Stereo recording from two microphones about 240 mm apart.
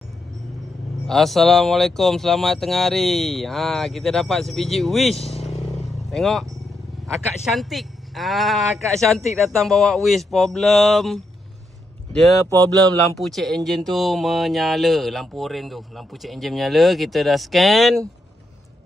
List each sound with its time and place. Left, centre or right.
1.0 s speech: centre
5.1 s speech: left
6.0 s speech: centre
7.5 s speech: centre